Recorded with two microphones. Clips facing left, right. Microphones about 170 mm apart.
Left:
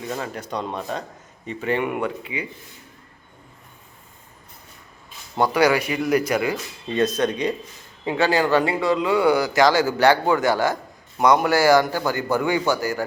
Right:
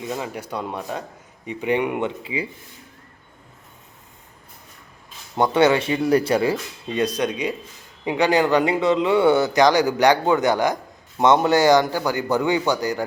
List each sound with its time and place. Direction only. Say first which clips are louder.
0.1 s a man's voice: left 1 dB; 10° right (ahead or behind); by 2.5 s 30° right (ahead or behind)
5.4 s speech: right 1 dB; 25° right (ahead or behind)
6.9 s a man's voice: left 1 dB; 10° right (ahead or behind)